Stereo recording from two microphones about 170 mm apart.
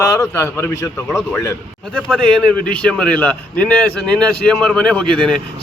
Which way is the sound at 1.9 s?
5° left (ahead or behind).